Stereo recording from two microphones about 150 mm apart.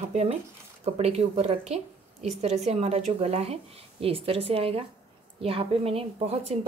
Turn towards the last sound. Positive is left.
turn(degrees=-40)  # may be behind; listen again after turning